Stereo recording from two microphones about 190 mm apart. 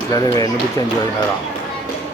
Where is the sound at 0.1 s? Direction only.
20° left (ahead or behind).